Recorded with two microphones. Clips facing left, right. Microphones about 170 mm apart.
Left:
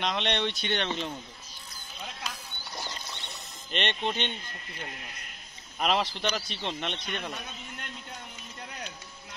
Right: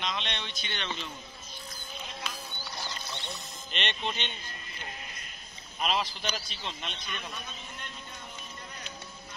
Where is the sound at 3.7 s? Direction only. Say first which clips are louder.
Left 4 dB; 50° left (ahead or behind).